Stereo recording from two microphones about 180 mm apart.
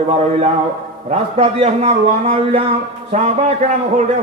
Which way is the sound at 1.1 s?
35° right (ahead or behind).